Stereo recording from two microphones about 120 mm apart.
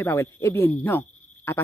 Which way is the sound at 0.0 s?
25° left (ahead or behind).